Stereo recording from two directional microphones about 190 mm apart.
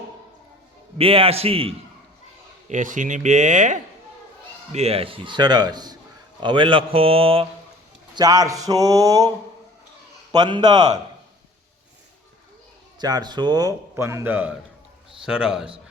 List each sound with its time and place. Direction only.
0.9 s a man's voice: 30° right (ahead or behind)
2.6 s a man's voice: 40° right (ahead or behind); by 9.3 s 20° right (ahead or behind)
10.3 s a man's voice: 20° right (ahead or behind)
13.0 s a man's voice: 20° right (ahead or behind); by 15.7 s 5° right (ahead or behind)